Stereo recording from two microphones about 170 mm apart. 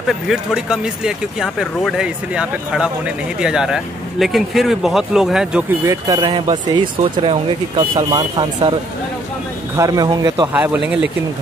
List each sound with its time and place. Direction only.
0.1 s speech: centre (ahead or behind)
5.9 s speech: 20° right (ahead or behind)
9.8 s speech: 20° right (ahead or behind)
10.5 s speech: 10° right (ahead or behind)